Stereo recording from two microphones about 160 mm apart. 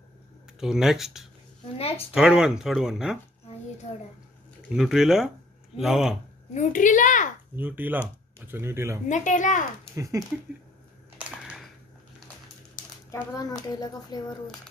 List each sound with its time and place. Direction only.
0.6 s speech: 5° right (ahead or behind)
4.7 s speech: centre (ahead or behind)
6.5 s a child's voice: 50° left (ahead or behind)
7.5 s speech: 10° right (ahead or behind)
9.1 s a child's voice: 50° left (ahead or behind)
9.9 s speech: 20° right (ahead or behind)
11.1 s a sound: 5° right (ahead or behind)
13.1 s a child's voice: 25° left (ahead or behind)